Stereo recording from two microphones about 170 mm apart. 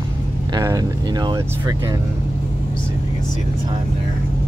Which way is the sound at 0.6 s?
20° right (ahead or behind).